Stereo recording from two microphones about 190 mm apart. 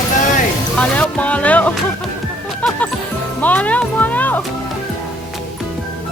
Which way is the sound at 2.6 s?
5° left (ahead or behind).